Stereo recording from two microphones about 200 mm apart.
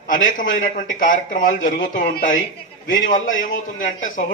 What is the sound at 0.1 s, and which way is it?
A man's voice, 40° left (ahead or behind).